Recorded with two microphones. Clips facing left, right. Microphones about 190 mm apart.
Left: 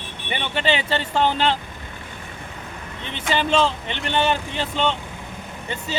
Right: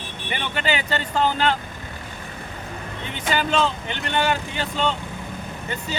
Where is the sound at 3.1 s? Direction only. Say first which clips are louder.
Left 2 dB; 30° left (ahead or behind).